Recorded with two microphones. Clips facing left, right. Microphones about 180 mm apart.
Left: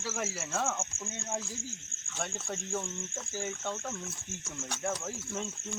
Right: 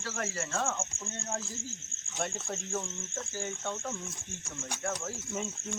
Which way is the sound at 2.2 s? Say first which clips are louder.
Right 2 dB; centre (ahead or behind).